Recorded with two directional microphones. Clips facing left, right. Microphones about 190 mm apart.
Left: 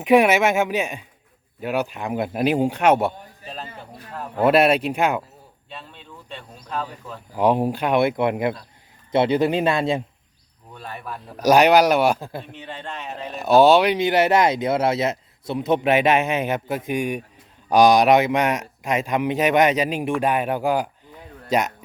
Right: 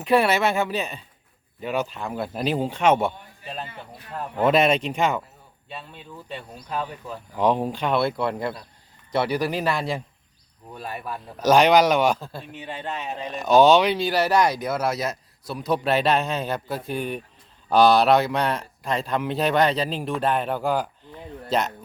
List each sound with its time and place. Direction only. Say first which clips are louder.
0.0 s speech: left 4 dB; 15° left (ahead or behind)
4.4 s speech: left 3 dB; 5° left (ahead or behind)
5.6 s speech: right 2 dB; 5° right (ahead or behind)
7.3 s speech: left 3 dB; 10° left (ahead or behind)
10.8 s speech: right 2 dB; 10° right (ahead or behind)
11.3 s speech: left 2 dB; 10° left (ahead or behind)
12.5 s speech: right 2 dB; 10° right (ahead or behind); by 21.2 s 10° left (ahead or behind)